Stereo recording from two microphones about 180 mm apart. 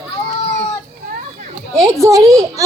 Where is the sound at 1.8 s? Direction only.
20° right (ahead or behind).